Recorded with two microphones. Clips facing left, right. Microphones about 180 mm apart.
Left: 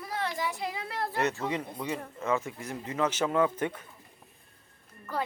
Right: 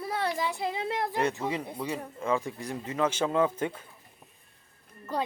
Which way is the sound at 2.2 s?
30° right (ahead or behind).